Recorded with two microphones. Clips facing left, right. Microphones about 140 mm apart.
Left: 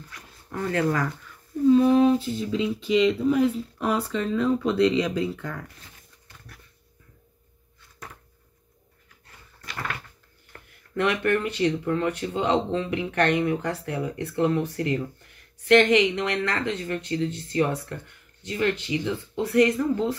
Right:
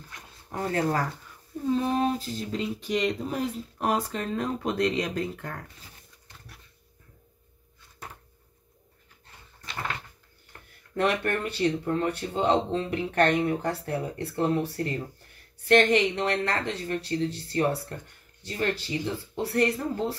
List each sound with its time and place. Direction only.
0.1 s a sound: 30° right (ahead or behind)
2.0 s speech: 40° right (ahead or behind)
6.2 s dog: 25° right (ahead or behind)
11.0 s speech: 35° right (ahead or behind)